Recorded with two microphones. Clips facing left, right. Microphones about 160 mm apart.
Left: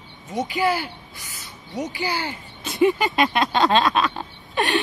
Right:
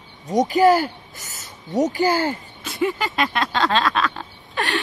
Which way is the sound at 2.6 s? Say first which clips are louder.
Left 5 dB; 20° left (ahead or behind).